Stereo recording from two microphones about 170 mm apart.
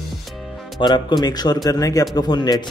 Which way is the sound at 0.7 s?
25° left (ahead or behind).